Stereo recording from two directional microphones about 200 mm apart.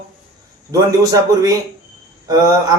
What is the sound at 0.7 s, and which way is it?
Speech, 15° right (ahead or behind).